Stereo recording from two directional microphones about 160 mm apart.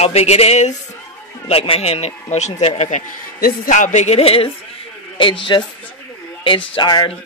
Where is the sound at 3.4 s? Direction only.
55° left (ahead or behind); by 4.5 s 40° left (ahead or behind).